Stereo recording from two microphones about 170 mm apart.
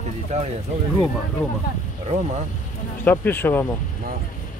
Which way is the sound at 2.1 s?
40° right (ahead or behind).